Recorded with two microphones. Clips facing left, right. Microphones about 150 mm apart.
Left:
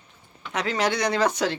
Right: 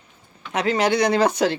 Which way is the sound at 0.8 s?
25° right (ahead or behind).